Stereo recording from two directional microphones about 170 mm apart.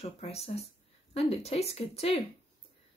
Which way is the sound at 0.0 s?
35° left (ahead or behind).